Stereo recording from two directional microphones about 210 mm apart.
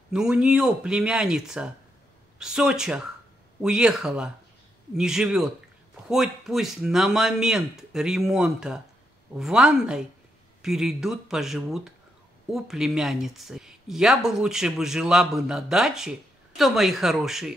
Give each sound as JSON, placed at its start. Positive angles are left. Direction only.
{"t": 0.1, "sound": "speech", "side_deg": -5}